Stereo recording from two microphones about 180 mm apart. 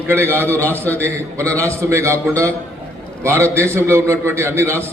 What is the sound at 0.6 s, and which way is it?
Speech, 10° left (ahead or behind).